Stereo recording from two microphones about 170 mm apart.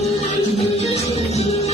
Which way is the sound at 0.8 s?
40° left (ahead or behind).